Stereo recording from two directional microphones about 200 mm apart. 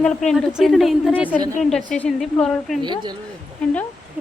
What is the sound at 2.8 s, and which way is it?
Speech, 20° right (ahead or behind).